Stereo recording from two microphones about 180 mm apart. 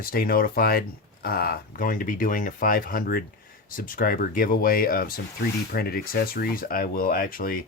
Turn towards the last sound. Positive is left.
turn(degrees=50)  # may be behind; listen again after turning